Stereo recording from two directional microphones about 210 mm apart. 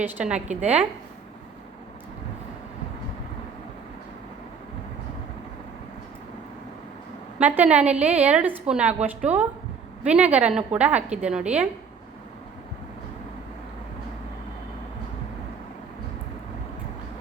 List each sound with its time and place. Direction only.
0.0 s a woman's voice: 5° right (ahead or behind)
0.3 s a woman's voice: 35° right (ahead or behind)
7.3 s a woman's voice: 5° right (ahead or behind)